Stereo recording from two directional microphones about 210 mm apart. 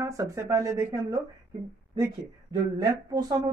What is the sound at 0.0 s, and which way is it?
Speech, 15° right (ahead or behind).